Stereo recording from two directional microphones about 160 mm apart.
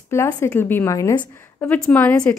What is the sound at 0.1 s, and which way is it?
Speech, 15° left (ahead or behind).